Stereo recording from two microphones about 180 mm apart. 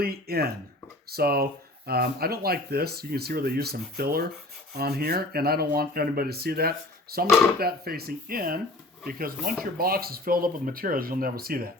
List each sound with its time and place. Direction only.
0.0 s speech: 60° right (ahead or behind)